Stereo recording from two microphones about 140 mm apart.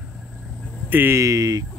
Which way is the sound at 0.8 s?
15° right (ahead or behind).